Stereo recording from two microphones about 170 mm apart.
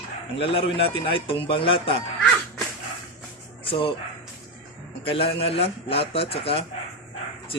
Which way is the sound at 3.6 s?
30° left (ahead or behind).